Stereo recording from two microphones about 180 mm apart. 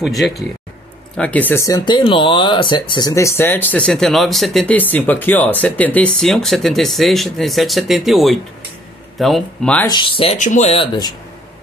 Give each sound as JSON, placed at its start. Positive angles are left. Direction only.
{"t": 0.0, "sound": "speech", "side_deg": 0}
{"t": 9.8, "sound": "speech", "side_deg": 25}